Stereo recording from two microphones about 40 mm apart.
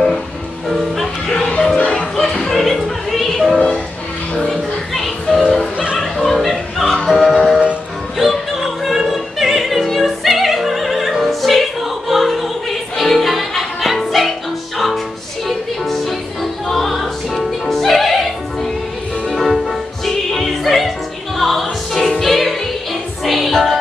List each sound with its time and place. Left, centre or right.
2.1 s music: centre
3.5 s music: left
4.4 s music: centre
5.9 s opera: centre
7.1 s music: centre
8.2 s opera: centre
12.1 s music: centre
15.4 s music: centre
20.2 s opera: centre
21.4 s music: centre